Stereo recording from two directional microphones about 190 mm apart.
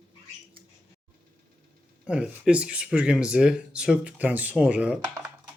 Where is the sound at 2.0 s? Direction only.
5° right (ahead or behind).